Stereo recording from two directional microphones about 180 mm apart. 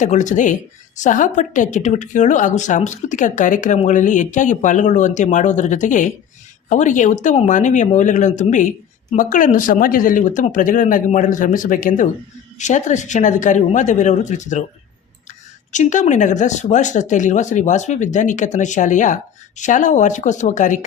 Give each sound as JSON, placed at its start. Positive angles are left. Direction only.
{"t": 0.0, "sound": "speech", "side_deg": 40}
{"t": 15.7, "sound": "speech", "side_deg": 45}